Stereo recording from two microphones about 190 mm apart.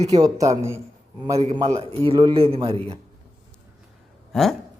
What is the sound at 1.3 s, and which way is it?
A man's voice, 35° right (ahead or behind).